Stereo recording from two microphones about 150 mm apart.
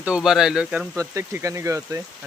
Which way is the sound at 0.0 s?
5° right (ahead or behind).